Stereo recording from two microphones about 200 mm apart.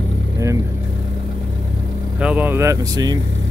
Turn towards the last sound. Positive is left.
turn(degrees=-20)  # may be behind; listen again after turning